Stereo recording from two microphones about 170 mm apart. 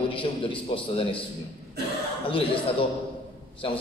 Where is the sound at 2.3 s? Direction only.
30° left (ahead or behind).